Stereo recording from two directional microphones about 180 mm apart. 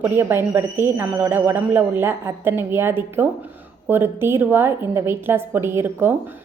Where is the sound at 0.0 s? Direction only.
10° right (ahead or behind).